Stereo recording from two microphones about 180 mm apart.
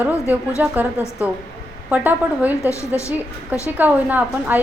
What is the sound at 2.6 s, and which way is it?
Speech, 15° left (ahead or behind).